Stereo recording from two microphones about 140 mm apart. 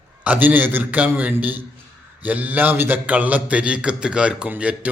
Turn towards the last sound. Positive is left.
turn(degrees=-10)  # may be behind; listen again after turning